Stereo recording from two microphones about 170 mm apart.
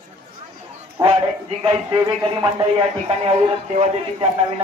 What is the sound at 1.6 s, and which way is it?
Speech, 25° right (ahead or behind).